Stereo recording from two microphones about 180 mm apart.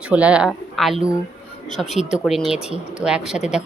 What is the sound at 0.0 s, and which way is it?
A woman's voice, 5° right (ahead or behind).